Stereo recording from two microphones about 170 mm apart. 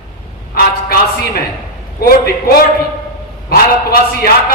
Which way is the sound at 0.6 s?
65° left (ahead or behind).